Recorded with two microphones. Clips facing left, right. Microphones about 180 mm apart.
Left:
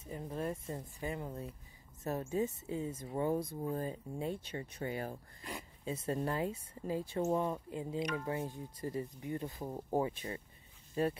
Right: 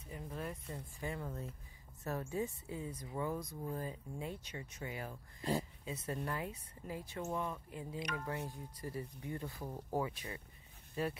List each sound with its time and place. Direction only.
0.0 s speech: 30° left (ahead or behind)
5.4 s speech: 30° right (ahead or behind)
5.9 s speech: 30° left (ahead or behind)